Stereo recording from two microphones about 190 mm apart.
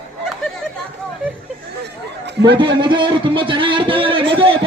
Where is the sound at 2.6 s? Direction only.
25° right (ahead or behind).